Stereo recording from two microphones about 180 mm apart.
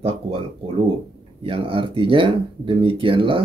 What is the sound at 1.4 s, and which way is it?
Speech, 30° right (ahead or behind).